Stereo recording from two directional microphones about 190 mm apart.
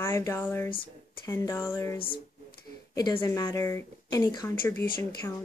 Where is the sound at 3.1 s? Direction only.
15° left (ahead or behind).